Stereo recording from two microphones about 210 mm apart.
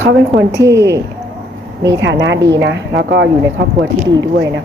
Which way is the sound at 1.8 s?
60° right (ahead or behind).